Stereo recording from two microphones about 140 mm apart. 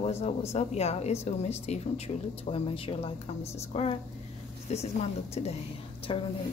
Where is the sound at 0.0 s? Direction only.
50° left (ahead or behind).